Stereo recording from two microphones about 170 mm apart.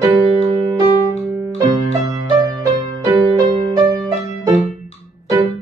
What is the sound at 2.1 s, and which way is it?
Music, 20° right (ahead or behind).